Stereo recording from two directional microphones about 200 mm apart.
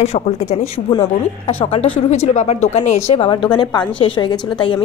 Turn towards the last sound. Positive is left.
turn(degrees=25)  # may be behind; listen again after turning